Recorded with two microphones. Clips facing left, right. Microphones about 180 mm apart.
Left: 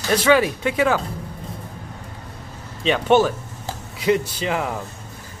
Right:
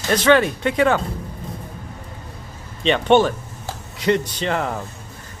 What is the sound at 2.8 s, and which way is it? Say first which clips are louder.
Speech: right 1 dB; 5° left (ahead or behind).